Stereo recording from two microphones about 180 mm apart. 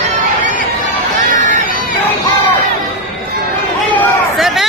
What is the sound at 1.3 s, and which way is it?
Run, 45° right (ahead or behind).